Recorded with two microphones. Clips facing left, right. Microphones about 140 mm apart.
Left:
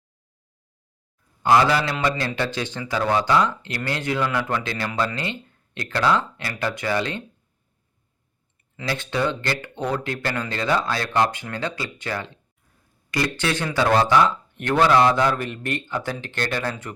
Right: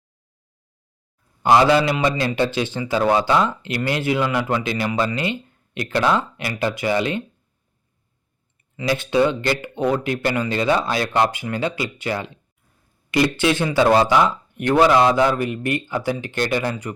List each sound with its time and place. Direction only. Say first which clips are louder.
1.4 s speech: right 3 dB; 20° right (ahead or behind)
8.7 s speech: right 7 dB; 10° right (ahead or behind)
13.1 s a sound: right 6 dB; 15° right (ahead or behind)
13.4 s speech: right 3 dB; 15° right (ahead or behind)